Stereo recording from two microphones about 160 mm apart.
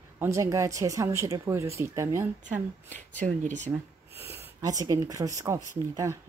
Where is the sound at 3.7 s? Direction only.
15° right (ahead or behind).